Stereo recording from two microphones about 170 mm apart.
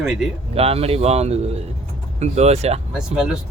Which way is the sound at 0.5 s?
35° right (ahead or behind).